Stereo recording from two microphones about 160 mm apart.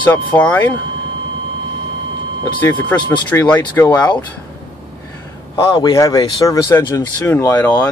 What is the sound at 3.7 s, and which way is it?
Speech, 20° left (ahead or behind).